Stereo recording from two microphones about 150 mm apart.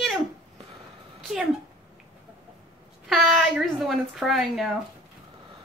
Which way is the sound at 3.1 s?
Centre (ahead or behind).